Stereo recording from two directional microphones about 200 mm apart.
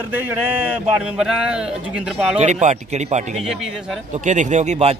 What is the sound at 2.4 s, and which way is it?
A man's voice, 35° right (ahead or behind).